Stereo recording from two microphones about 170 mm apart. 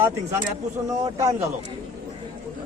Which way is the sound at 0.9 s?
20° right (ahead or behind).